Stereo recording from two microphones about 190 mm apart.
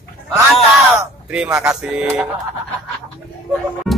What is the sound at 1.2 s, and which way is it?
Speech, 5° right (ahead or behind).